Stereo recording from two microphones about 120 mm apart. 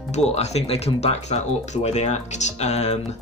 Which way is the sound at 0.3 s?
60° left (ahead or behind).